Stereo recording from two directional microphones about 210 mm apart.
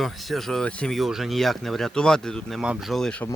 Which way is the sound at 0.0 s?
Centre (ahead or behind).